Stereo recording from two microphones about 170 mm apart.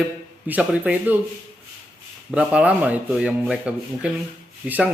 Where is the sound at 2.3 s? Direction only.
5° right (ahead or behind).